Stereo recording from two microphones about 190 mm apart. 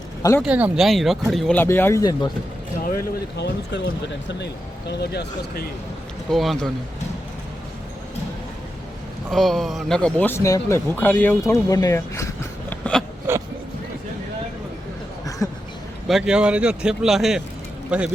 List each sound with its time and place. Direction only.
0.2 s speech: 15° left (ahead or behind)
0.4 s a man's voice: 5° right (ahead or behind)
1.6 s a man's voice: 15° left (ahead or behind)
3.3 s speech: 65° left (ahead or behind)
6.3 s a man's voice: centre (ahead or behind)
9.3 s a man's voice: centre (ahead or behind)
13.3 s a sound: 10° right (ahead or behind)
15.4 s a sound: 15° left (ahead or behind)
16.0 s a man's voice: centre (ahead or behind)